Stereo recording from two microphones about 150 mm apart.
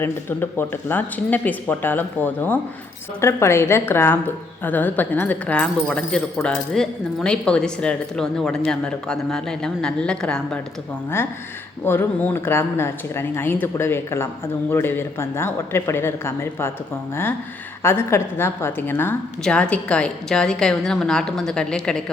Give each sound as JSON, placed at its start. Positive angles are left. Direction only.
{"t": 0.0, "sound": "speech", "side_deg": 15}
{"t": 11.9, "sound": "speech", "side_deg": 15}
{"t": 17.8, "sound": "speech", "side_deg": 15}